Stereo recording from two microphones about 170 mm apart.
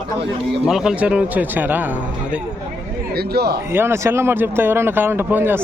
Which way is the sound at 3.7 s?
15° right (ahead or behind).